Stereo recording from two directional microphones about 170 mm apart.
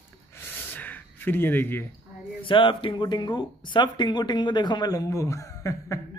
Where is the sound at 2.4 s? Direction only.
30° left (ahead or behind).